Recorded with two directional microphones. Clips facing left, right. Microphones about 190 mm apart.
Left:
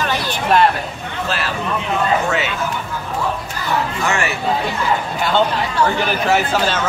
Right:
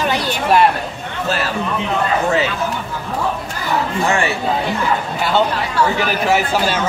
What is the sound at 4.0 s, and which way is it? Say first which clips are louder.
Speech: right 3 dB; 30° right (ahead or behind).